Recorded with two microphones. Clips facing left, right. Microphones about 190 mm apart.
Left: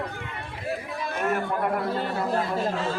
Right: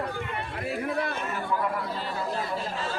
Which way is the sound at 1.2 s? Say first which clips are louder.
Left 4 dB; 60° left (ahead or behind).